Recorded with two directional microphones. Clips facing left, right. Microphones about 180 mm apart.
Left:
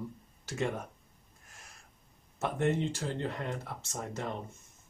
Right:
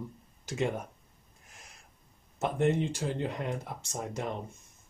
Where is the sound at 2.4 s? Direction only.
15° right (ahead or behind).